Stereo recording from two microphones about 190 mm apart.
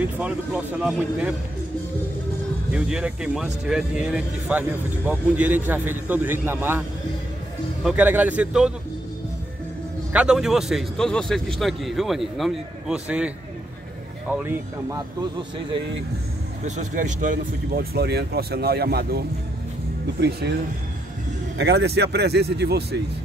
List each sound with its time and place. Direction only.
0.0 s a man's voice: 5° right (ahead or behind)
2.7 s a man's voice: 5° right (ahead or behind)
7.8 s a man's voice: 10° right (ahead or behind)
10.1 s speech: 5° right (ahead or behind)
14.3 s a man's voice: 10° right (ahead or behind)
16.6 s speech: 40° right (ahead or behind); by 20.5 s 60° right (ahead or behind)
21.5 s speech: 65° right (ahead or behind)